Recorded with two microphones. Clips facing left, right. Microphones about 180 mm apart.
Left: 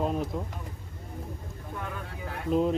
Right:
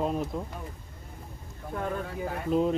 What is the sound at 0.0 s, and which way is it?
Vehicle, centre (ahead or behind).